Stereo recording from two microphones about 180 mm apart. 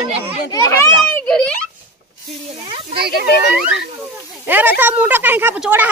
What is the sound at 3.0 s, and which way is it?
Speech, 60° right (ahead or behind).